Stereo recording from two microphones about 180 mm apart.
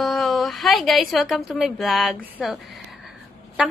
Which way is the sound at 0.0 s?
Centre (ahead or behind).